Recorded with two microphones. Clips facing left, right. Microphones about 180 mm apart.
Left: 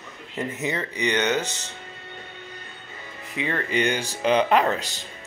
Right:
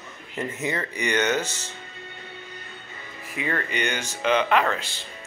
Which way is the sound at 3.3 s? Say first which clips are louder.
Left 3 dB; 20° left (ahead or behind).